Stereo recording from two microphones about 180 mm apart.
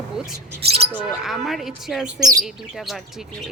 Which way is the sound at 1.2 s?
Centre (ahead or behind).